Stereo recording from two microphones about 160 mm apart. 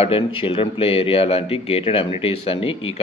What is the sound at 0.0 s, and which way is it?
Speech, 35° left (ahead or behind).